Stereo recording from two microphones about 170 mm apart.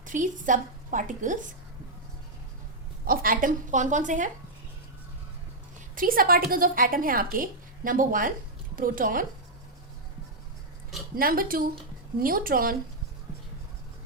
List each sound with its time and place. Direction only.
0.0 s a woman's voice: 50° right (ahead or behind)
3.0 s a woman's voice: 60° right (ahead or behind)
5.9 s a woman's voice: 55° right (ahead or behind)
11.2 s a woman's voice: 60° right (ahead or behind)